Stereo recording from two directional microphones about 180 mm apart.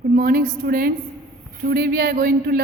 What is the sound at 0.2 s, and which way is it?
A woman's voice, 50° right (ahead or behind).